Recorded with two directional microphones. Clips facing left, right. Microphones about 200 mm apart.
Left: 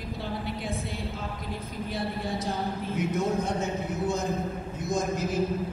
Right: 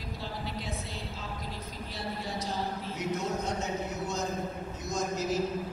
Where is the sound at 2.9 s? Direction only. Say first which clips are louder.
Left 6 dB; 55° left (ahead or behind).